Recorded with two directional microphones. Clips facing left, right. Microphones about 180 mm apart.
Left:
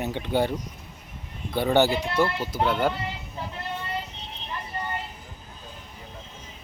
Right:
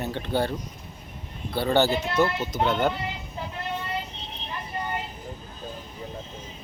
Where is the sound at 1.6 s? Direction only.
15° left (ahead or behind).